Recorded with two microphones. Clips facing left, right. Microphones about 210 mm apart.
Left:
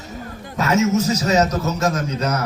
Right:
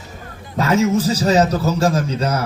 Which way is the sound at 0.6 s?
30° right (ahead or behind).